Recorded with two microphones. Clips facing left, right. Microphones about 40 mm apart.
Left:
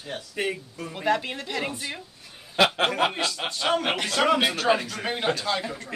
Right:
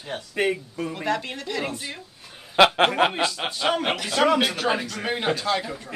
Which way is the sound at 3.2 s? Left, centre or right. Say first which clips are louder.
Right 3 dB; centre.